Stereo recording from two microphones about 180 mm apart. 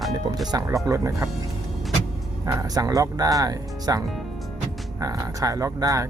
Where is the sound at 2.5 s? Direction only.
20° right (ahead or behind).